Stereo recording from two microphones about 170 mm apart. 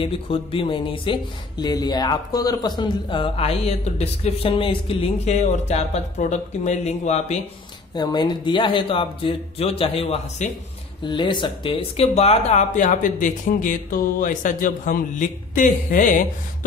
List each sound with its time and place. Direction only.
0.0 s speech: 30° left (ahead or behind)
7.9 s speech: 25° left (ahead or behind); by 16.3 s 50° left (ahead or behind)